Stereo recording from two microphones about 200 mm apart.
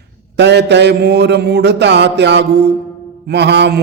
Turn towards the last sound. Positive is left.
turn(degrees=-60)  # may be behind; listen again after turning